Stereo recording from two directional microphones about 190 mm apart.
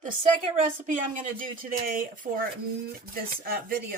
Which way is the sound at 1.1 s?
45° right (ahead or behind).